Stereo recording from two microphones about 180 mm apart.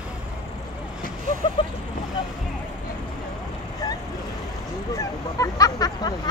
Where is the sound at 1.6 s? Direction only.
30° left (ahead or behind).